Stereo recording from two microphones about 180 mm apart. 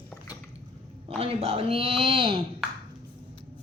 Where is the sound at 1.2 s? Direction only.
30° right (ahead or behind).